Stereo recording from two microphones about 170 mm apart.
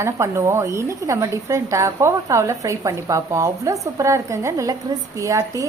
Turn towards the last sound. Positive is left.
turn(degrees=-20)  # may be behind; listen again after turning